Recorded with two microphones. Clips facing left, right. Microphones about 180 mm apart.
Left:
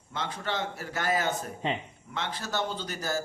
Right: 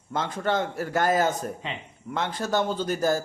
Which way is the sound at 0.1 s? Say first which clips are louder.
Right 7 dB; 45° right (ahead or behind).